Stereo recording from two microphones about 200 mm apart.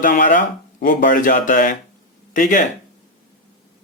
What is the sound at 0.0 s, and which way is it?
Speech, 45° left (ahead or behind).